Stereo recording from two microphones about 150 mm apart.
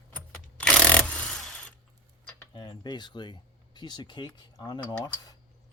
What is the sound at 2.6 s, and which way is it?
Speech, 30° left (ahead or behind).